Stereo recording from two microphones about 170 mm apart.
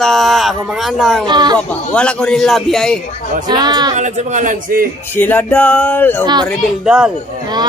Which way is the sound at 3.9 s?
45° right (ahead or behind).